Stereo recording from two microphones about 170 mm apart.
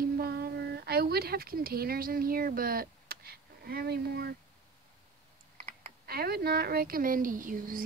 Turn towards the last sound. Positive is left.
turn(degrees=-55)  # may be behind; listen again after turning